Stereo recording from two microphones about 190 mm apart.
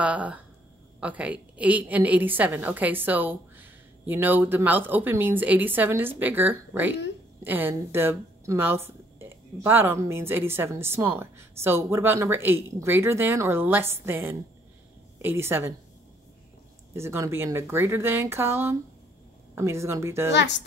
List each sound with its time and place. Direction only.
0.0 s a woman's voice: 5° right (ahead or behind)
16.9 s a woman's voice: 15° right (ahead or behind)
20.3 s speech: 70° left (ahead or behind)